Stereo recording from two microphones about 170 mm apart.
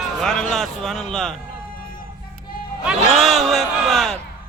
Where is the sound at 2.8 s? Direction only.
Centre (ahead or behind).